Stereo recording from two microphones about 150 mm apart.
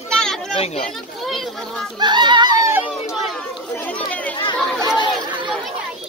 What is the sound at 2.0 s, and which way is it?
Speech, 30° right (ahead or behind).